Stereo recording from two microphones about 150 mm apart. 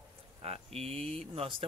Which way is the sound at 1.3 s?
35° right (ahead or behind).